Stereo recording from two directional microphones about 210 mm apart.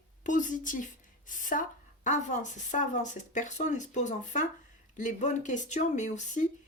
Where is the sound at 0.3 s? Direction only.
35° left (ahead or behind).